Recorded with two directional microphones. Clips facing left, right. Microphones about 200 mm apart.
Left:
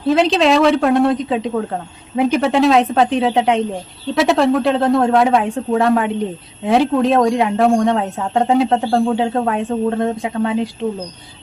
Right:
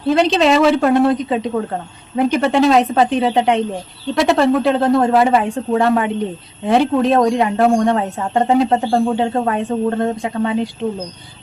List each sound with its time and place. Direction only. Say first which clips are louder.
0.1 s speech: even; centre (ahead or behind)